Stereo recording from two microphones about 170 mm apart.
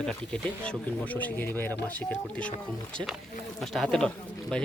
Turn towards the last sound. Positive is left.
turn(degrees=5)  # may be behind; listen again after turning